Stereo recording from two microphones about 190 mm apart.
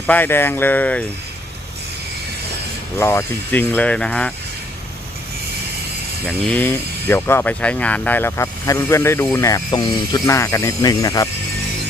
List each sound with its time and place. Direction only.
0.1 s speech: 10° left (ahead or behind)
3.0 s speech: 15° left (ahead or behind)
6.2 s speech: 5° left (ahead or behind)